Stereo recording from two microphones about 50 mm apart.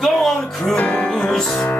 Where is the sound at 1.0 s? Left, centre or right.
Centre.